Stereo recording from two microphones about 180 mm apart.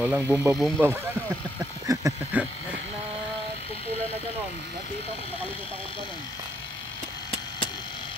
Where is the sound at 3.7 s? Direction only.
35° left (ahead or behind).